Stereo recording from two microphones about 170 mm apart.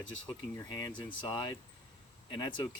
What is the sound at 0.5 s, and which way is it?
Speech, 20° left (ahead or behind).